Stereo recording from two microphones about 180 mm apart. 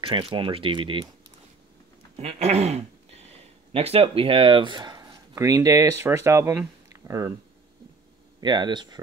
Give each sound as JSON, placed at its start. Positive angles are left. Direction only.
{"t": 0.0, "sound": "speech", "side_deg": -30}
{"t": 2.1, "sound": "speech", "side_deg": -35}
{"t": 8.4, "sound": "speech", "side_deg": -25}